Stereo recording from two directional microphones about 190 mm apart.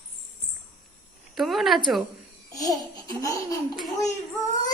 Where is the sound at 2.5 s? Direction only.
20° left (ahead or behind).